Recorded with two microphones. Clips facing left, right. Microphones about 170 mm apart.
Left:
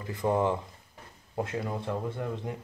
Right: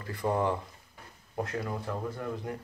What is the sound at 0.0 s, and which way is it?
Speech, 20° left (ahead or behind).